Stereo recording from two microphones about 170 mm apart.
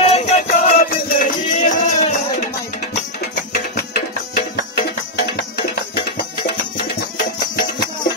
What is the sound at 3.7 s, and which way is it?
Music, 70° left (ahead or behind).